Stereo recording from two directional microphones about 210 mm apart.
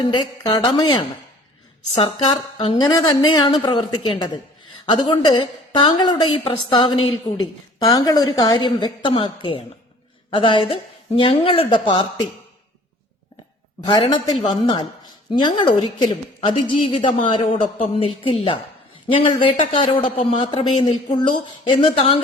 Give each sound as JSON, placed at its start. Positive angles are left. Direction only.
{"t": 0.0, "sound": "a woman's voice", "side_deg": 20}
{"t": 13.8, "sound": "a woman's voice", "side_deg": 20}